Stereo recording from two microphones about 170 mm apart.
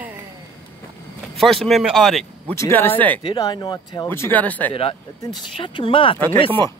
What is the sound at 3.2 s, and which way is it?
Speech, 25° left (ahead or behind).